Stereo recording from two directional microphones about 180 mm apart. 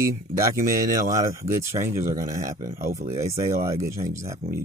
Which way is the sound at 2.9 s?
40° right (ahead or behind).